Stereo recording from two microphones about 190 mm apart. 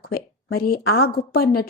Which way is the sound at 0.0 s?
55° left (ahead or behind).